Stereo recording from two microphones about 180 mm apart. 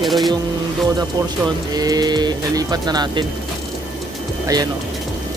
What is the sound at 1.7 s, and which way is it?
Speech, 20° right (ahead or behind).